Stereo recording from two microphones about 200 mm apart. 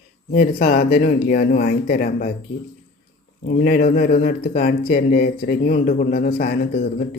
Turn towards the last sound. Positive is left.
turn(degrees=45)  # may be behind; listen again after turning